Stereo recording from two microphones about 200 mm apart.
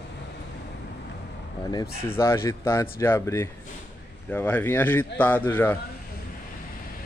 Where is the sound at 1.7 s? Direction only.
20° left (ahead or behind).